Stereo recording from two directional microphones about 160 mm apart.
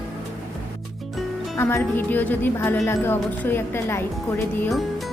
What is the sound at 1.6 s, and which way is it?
A woman's voice, 15° left (ahead or behind).